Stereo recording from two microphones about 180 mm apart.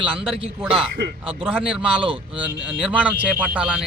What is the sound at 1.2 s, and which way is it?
Speech, 30° right (ahead or behind).